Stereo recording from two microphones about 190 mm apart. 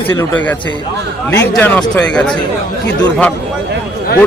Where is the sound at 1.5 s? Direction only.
5° left (ahead or behind).